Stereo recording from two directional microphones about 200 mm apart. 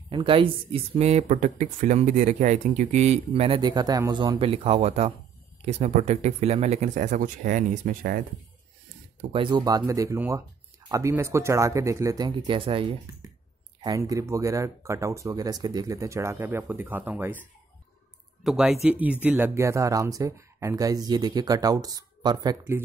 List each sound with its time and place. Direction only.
0.1 s speech: 25° right (ahead or behind); by 8.2 s 45° right (ahead or behind)
9.3 s speech: 25° right (ahead or behind)
12.4 s speech: 25° right (ahead or behind); by 17.4 s 10° right (ahead or behind)
18.4 s speech: centre (ahead or behind); by 22.8 s 20° right (ahead or behind)